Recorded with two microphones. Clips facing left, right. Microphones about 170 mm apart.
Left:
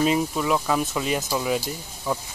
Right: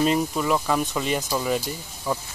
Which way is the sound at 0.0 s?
Centre (ahead or behind).